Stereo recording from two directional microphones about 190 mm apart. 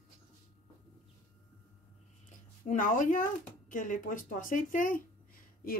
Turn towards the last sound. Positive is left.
turn(degrees=50)  # may be behind; listen again after turning